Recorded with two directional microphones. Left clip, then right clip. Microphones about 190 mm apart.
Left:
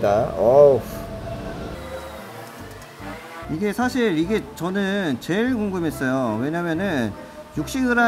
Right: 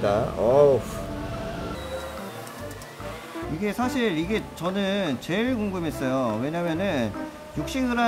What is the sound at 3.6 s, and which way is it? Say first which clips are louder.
Speech: left 4 dB; 15° left (ahead or behind).